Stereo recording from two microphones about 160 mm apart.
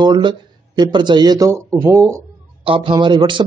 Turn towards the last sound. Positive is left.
turn(degrees=-30)  # may be behind; listen again after turning